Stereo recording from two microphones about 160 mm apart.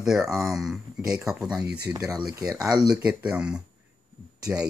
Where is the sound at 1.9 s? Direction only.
25° right (ahead or behind).